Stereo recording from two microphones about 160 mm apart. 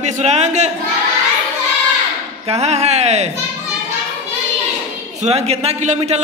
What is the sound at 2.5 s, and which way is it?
Speech, 45° right (ahead or behind).